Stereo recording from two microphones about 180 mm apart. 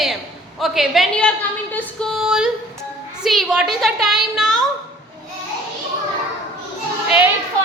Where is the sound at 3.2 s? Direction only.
Centre (ahead or behind).